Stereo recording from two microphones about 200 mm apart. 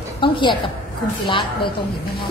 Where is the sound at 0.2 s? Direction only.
25° left (ahead or behind).